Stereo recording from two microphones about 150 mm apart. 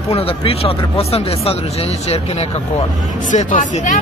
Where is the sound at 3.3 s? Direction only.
55° left (ahead or behind).